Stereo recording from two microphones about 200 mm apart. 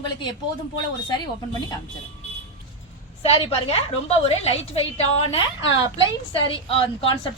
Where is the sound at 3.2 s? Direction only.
30° left (ahead or behind).